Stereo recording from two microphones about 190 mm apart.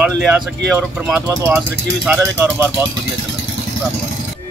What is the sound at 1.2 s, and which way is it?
Speech, 20° right (ahead or behind).